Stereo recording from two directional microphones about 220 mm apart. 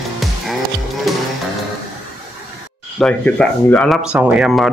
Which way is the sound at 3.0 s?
5° left (ahead or behind).